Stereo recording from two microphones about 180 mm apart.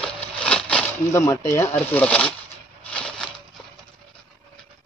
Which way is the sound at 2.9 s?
5° left (ahead or behind).